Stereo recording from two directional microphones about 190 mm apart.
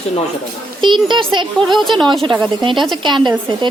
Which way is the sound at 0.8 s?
25° right (ahead or behind).